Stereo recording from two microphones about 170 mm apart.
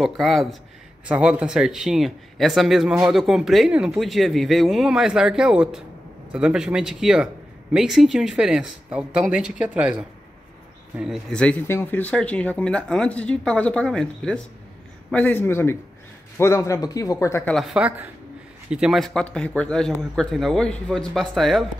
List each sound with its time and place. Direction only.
0.0 s a man's voice: centre (ahead or behind); by 17.4 s 20° left (ahead or behind)
17.5 s speech: centre (ahead or behind)